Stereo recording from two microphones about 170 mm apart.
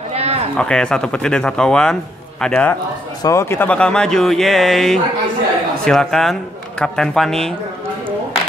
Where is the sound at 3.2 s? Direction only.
15° left (ahead or behind).